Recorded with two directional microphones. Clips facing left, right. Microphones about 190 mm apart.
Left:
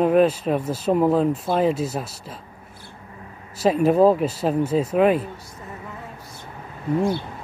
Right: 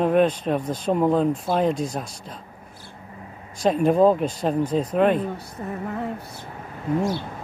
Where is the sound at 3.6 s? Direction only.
5° left (ahead or behind).